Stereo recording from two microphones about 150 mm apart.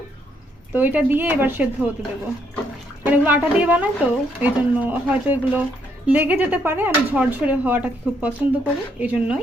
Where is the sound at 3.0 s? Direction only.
10° right (ahead or behind).